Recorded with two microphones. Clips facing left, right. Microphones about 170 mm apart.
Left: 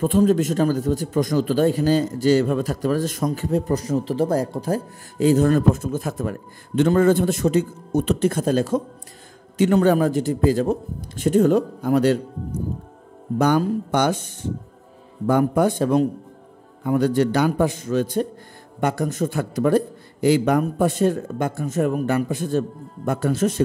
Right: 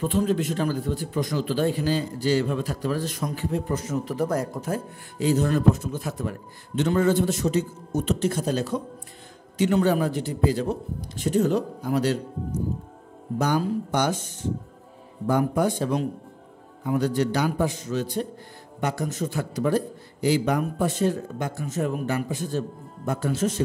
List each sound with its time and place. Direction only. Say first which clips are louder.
0.0 s speech: left 6 dB; 45° left (ahead or behind)
13.4 s a man's voice: left 5 dB; 60° left (ahead or behind)
15.2 s a man's voice: left 4 dB; 55° left (ahead or behind)